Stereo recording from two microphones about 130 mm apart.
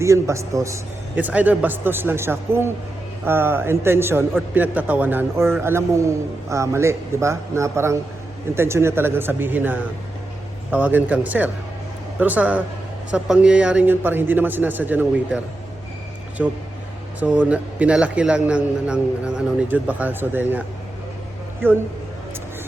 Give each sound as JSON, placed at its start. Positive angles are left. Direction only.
{"t": 0.0, "sound": "speech", "side_deg": -20}
{"t": 1.1, "sound": "a man's voice", "side_deg": -10}
{"t": 16.4, "sound": "a man's voice", "side_deg": -10}